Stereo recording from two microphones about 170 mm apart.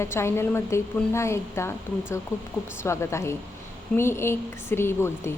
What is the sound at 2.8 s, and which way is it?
A woman's voice, 15° left (ahead or behind).